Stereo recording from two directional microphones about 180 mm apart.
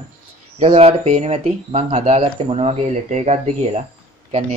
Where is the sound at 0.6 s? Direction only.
35° right (ahead or behind).